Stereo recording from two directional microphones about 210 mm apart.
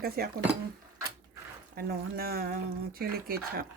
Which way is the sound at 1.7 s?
45° right (ahead or behind).